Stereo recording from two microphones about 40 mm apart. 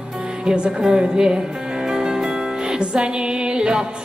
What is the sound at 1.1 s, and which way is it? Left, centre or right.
Music, centre.